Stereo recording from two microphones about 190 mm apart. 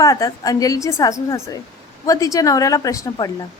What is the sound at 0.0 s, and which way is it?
A woman's voice, 15° left (ahead or behind).